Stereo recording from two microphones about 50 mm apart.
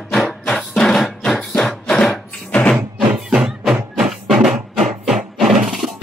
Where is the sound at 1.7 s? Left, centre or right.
Centre.